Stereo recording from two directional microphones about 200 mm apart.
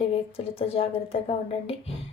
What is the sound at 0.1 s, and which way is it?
Speech, 30° left (ahead or behind).